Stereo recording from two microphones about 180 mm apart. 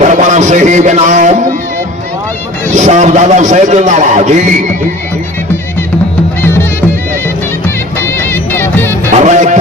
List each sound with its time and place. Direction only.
0.0 s a man's voice: 45° right (ahead or behind)
2.7 s a man's voice: 40° right (ahead or behind)
8.2 s music: 10° left (ahead or behind)
9.0 s music: 40° right (ahead or behind)